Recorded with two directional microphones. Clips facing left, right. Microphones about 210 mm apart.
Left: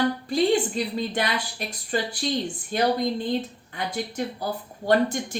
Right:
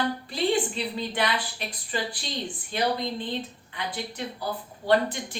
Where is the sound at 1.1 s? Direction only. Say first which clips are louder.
Left 1 dB; 45° left (ahead or behind).